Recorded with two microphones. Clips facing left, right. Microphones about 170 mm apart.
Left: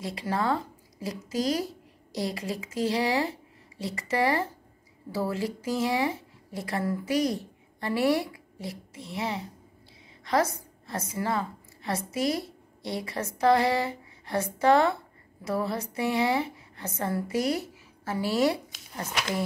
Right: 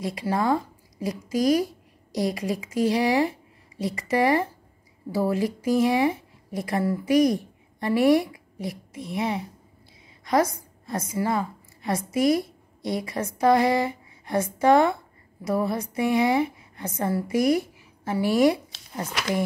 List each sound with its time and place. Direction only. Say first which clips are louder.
0.2 s a woman's voice: right 4 dB; 15° right (ahead or behind)